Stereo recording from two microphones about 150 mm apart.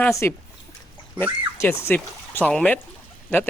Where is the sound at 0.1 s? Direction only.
20° left (ahead or behind).